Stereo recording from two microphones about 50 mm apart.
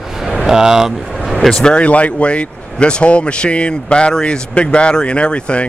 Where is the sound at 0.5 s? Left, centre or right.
Centre.